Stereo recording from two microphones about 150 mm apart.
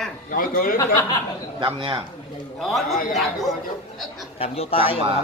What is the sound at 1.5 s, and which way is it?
Speech, 35° right (ahead or behind).